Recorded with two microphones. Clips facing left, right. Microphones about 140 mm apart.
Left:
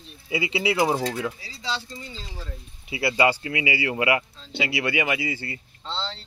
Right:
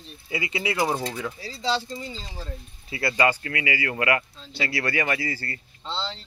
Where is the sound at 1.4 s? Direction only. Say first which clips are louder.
Right 5 dB; 35° right (ahead or behind).